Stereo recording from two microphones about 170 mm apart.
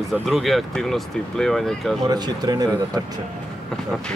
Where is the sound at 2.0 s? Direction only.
25° right (ahead or behind).